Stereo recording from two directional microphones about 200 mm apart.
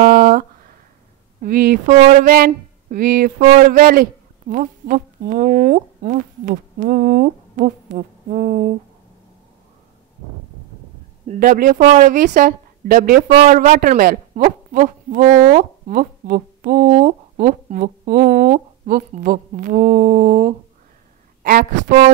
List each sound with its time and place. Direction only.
0.0 s a sound: 45° right (ahead or behind)
1.4 s a woman's voice: 45° right (ahead or behind)
11.2 s speech: 45° right (ahead or behind)